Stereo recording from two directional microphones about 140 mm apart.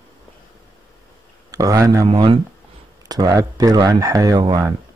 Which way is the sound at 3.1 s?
30° right (ahead or behind).